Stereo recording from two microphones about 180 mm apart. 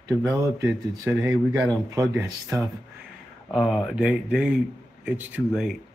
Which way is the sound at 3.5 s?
Centre (ahead or behind).